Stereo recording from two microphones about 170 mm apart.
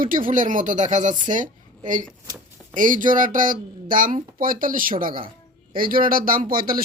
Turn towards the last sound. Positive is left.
turn(degrees=-60)  # may be behind; listen again after turning